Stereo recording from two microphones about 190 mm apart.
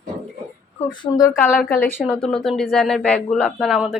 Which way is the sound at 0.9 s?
20° left (ahead or behind).